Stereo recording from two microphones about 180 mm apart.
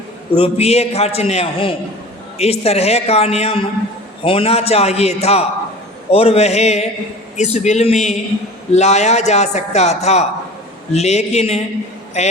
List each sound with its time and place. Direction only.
0.3 s a man's voice: 35° left (ahead or behind)